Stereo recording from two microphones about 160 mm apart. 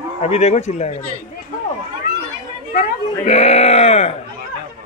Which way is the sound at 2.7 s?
45° left (ahead or behind).